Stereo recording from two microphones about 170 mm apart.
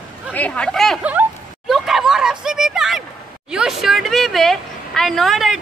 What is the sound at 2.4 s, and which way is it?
Speech, 5° right (ahead or behind).